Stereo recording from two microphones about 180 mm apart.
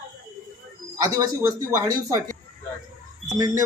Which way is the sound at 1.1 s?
15° right (ahead or behind).